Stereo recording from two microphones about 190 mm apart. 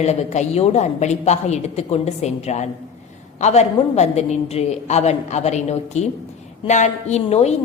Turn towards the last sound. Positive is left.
turn(degrees=35)  # may be behind; listen again after turning